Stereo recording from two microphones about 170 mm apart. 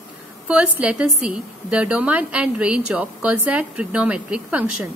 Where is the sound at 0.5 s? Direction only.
5° right (ahead or behind).